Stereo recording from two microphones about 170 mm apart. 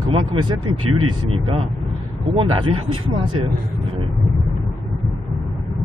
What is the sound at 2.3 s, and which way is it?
Speech, 30° right (ahead or behind).